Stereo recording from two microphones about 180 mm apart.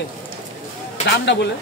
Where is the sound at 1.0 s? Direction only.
70° left (ahead or behind).